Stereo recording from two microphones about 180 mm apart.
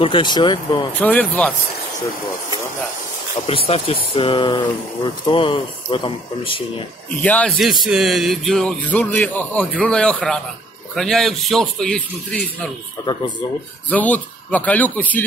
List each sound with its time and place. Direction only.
0.0 s speech: 25° left (ahead or behind)
1.0 s speech: 10° left (ahead or behind)
3.4 s speech: 35° left (ahead or behind)
7.2 s speech: 10° left (ahead or behind)
13.8 s speech: 10° left (ahead or behind)